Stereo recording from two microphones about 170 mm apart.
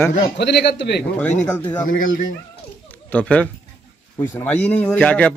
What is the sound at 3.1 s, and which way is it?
Speech, 10° left (ahead or behind).